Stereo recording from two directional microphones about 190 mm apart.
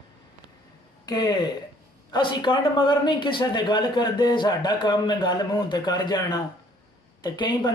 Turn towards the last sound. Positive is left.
turn(degrees=25)  # may be behind; listen again after turning